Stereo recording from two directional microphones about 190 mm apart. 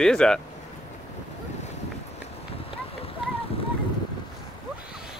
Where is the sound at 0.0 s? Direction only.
5° left (ahead or behind).